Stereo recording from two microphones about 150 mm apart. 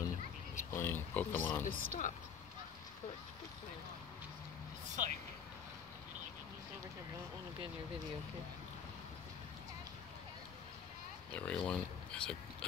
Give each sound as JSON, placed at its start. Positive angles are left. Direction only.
{"t": 0.7, "sound": "speech", "side_deg": 15}
{"t": 1.6, "sound": "speech", "side_deg": 60}
{"t": 4.8, "sound": "vehicle", "side_deg": -55}
{"t": 11.3, "sound": "speech", "side_deg": 10}